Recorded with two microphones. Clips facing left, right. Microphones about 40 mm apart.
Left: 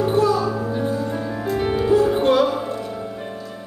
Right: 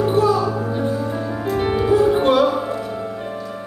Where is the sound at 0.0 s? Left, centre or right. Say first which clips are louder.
Right 1 dB; centre.